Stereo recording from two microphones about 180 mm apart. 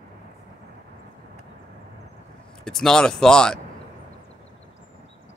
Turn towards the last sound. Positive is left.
turn(degrees=5)  # may be behind; listen again after turning